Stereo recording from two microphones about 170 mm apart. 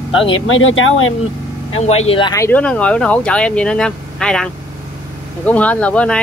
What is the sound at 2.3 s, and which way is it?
Speech, 10° left (ahead or behind).